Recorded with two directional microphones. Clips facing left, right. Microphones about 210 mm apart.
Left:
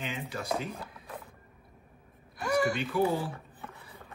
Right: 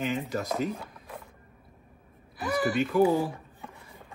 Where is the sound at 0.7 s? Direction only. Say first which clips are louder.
Even; centre (ahead or behind).